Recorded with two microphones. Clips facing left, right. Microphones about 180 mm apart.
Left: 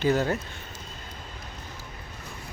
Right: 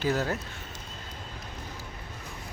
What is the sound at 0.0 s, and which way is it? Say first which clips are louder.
Speech: left 4 dB; centre (ahead or behind).